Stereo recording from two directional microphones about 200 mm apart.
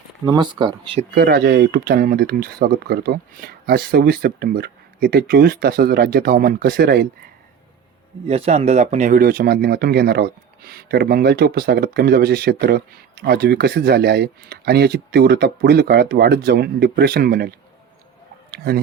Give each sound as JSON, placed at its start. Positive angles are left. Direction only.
{"t": 0.3, "sound": "speech", "side_deg": -20}
{"t": 1.1, "sound": "speech", "side_deg": -50}
{"t": 8.3, "sound": "speech", "side_deg": -35}
{"t": 18.5, "sound": "speech", "side_deg": -50}